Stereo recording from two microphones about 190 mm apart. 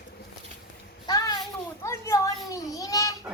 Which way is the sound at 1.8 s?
15° left (ahead or behind).